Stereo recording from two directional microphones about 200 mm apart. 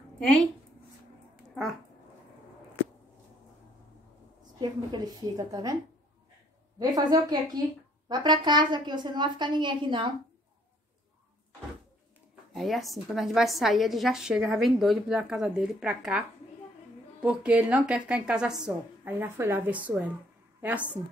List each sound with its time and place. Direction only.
1.5 s speech: centre (ahead or behind)
4.6 s a woman's voice: 20° right (ahead or behind)
6.8 s a woman's voice: 20° right (ahead or behind)
12.5 s a woman's voice: centre (ahead or behind)